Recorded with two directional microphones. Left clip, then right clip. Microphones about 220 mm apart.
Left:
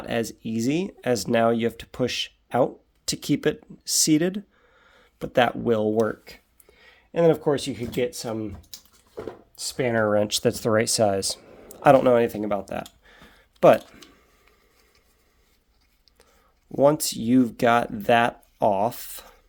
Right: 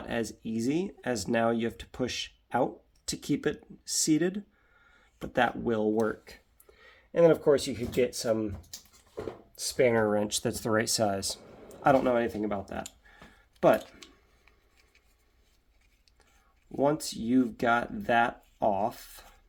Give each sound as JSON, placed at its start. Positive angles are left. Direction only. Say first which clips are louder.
{"t": 0.0, "sound": "speech", "louder": "left 6 dB", "side_deg": 40}
{"t": 9.6, "sound": "speech", "louder": "left 1 dB", "side_deg": 30}
{"t": 16.7, "sound": "speech", "louder": "left 8 dB", "side_deg": 50}